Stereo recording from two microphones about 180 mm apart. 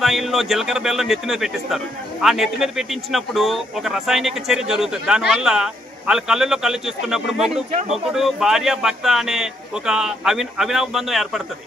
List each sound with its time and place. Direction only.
0.0 s a man's voice: centre (ahead or behind)